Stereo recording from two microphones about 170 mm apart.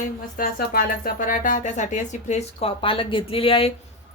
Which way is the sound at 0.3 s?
60° left (ahead or behind).